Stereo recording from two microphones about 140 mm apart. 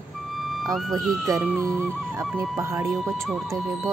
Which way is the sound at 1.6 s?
25° right (ahead or behind).